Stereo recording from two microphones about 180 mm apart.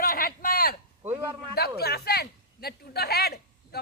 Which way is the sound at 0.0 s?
55° left (ahead or behind).